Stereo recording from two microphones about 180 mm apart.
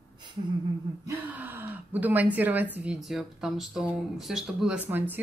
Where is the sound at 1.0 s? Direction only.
10° right (ahead or behind).